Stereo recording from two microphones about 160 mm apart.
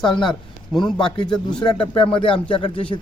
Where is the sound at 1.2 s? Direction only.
30° left (ahead or behind).